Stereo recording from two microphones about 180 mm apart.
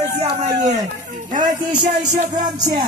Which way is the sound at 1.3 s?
45° right (ahead or behind).